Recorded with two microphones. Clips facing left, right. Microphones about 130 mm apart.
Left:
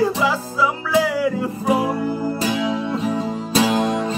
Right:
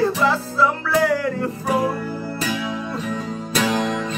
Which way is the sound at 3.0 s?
30° left (ahead or behind).